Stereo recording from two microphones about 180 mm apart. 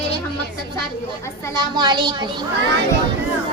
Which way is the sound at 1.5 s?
25° right (ahead or behind).